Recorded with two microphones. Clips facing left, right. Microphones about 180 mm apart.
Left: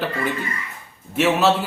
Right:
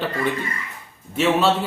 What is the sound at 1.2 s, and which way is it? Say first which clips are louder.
Speech: left 1 dB; 5° left (ahead or behind).